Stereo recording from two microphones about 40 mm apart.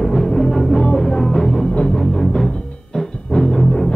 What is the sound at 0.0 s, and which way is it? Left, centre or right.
Music, centre.